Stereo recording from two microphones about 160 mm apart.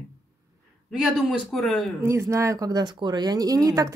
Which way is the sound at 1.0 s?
Centre (ahead or behind).